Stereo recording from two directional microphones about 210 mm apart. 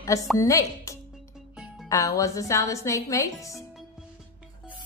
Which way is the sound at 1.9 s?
15° left (ahead or behind).